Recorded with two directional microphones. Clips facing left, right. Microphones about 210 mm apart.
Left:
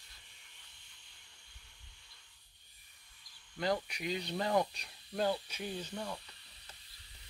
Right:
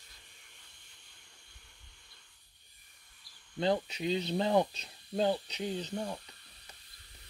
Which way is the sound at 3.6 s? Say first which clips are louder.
Right 4 dB; 25° right (ahead or behind).